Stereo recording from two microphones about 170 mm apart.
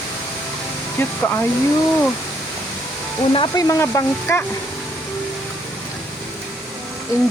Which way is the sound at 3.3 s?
20° left (ahead or behind).